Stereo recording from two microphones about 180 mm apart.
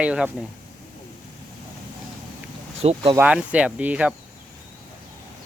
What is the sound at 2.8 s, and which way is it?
Speech, 35° right (ahead or behind).